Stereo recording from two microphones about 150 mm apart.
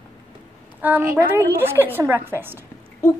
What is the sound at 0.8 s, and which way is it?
A woman's voice, 10° right (ahead or behind).